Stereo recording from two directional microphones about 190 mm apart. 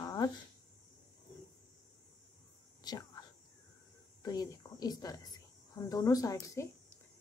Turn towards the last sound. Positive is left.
turn(degrees=15)  # may be behind; listen again after turning